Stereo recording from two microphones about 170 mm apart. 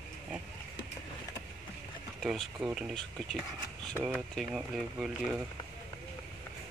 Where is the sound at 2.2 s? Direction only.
5° right (ahead or behind).